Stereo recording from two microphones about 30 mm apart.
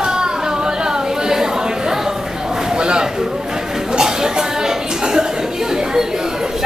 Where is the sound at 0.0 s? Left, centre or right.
Right.